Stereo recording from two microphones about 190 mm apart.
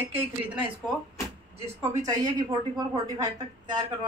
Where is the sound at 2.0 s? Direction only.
20° right (ahead or behind).